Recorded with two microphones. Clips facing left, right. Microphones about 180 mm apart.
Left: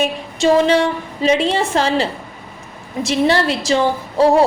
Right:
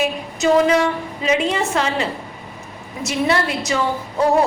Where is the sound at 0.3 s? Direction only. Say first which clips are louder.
Left 2 dB; 30° left (ahead or behind).